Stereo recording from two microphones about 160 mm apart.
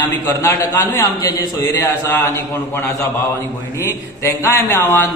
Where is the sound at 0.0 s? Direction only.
15° left (ahead or behind).